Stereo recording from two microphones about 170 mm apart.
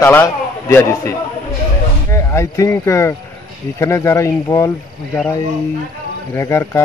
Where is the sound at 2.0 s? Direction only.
15° left (ahead or behind).